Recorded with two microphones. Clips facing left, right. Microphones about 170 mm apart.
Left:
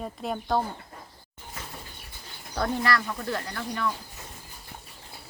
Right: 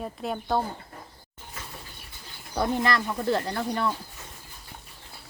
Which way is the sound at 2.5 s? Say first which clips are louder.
Right 1 dB; 15° right (ahead or behind).